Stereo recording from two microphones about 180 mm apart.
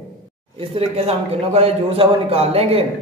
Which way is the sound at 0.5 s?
35° right (ahead or behind).